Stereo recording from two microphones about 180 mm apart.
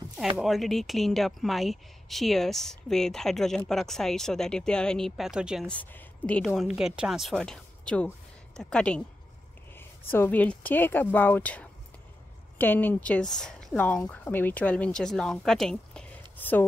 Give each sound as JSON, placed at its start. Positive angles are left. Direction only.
{"t": 0.4, "sound": "speech", "side_deg": 0}
{"t": 5.7, "sound": "a woman's voice", "side_deg": 10}